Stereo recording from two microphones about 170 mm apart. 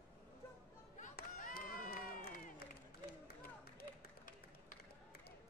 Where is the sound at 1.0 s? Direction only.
55° left (ahead or behind).